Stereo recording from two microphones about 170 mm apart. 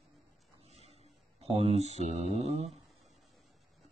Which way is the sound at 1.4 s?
35° right (ahead or behind).